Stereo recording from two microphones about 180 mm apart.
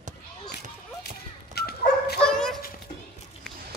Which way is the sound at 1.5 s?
60° left (ahead or behind).